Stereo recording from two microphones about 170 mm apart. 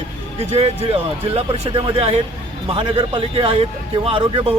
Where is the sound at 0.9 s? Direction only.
35° right (ahead or behind).